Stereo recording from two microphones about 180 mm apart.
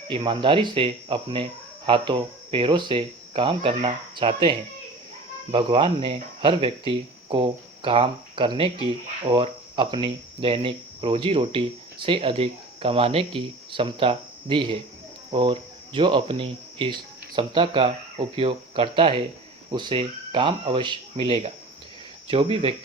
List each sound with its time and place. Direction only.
0.1 s speech: 25° right (ahead or behind)